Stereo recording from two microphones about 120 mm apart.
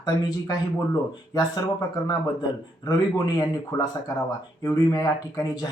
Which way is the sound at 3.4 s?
30° left (ahead or behind).